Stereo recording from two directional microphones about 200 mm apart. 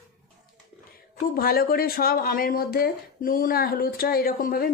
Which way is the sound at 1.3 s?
50° left (ahead or behind).